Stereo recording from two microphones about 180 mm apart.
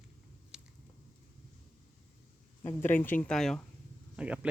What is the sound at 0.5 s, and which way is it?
Biting, 5° right (ahead or behind).